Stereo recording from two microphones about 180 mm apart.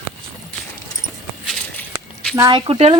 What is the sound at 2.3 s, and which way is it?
Speech, 25° right (ahead or behind).